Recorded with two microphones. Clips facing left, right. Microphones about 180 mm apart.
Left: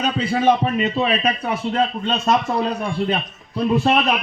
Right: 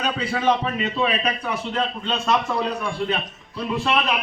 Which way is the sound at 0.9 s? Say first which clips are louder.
Left 3 dB; 45° left (ahead or behind).